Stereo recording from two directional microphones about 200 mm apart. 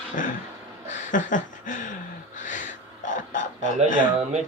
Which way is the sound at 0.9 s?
40° left (ahead or behind).